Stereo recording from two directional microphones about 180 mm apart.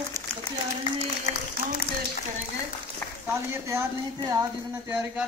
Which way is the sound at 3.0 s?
10° left (ahead or behind).